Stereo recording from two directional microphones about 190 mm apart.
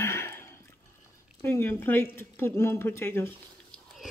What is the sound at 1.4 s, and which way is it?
Speech, 10° left (ahead or behind).